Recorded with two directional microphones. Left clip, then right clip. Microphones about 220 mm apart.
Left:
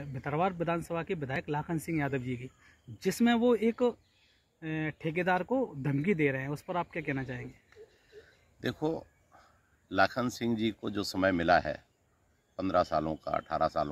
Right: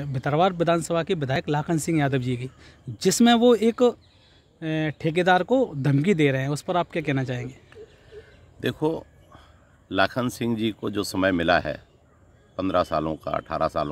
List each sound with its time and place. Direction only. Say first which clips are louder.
0.0 s speech: right 10 dB; 55° right (ahead or behind)
8.5 s a sound: right 8 dB; 10° right (ahead or behind)
10.8 s speech: right 8 dB; 10° right (ahead or behind)